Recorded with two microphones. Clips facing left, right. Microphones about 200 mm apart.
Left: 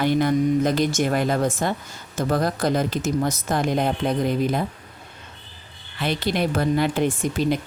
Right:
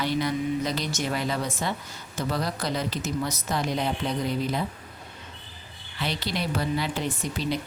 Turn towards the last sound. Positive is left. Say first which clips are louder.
# left 6 dB
turn(degrees=50)  # may be behind; listen again after turning